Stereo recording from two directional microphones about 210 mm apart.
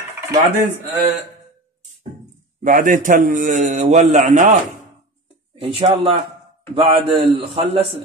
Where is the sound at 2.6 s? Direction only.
40° right (ahead or behind).